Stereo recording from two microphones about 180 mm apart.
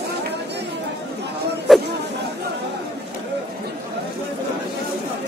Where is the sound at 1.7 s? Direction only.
Centre (ahead or behind).